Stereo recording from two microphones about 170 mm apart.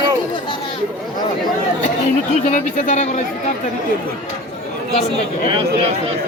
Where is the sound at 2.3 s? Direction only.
45° left (ahead or behind).